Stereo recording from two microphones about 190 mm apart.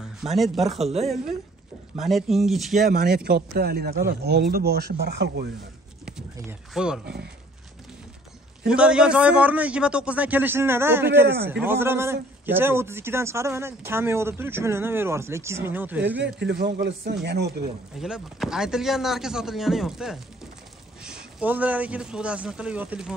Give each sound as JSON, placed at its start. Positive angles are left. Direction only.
{"t": 0.2, "sound": "speech", "side_deg": 0}
{"t": 3.3, "sound": "speech", "side_deg": -55}
{"t": 6.7, "sound": "speech", "side_deg": -5}
{"t": 8.6, "sound": "a man's voice", "side_deg": -5}
{"t": 16.3, "sound": "speech", "side_deg": -65}
{"t": 17.9, "sound": "speech", "side_deg": -5}